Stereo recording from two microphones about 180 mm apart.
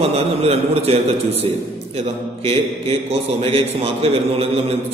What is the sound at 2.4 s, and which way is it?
A man's voice, 35° right (ahead or behind).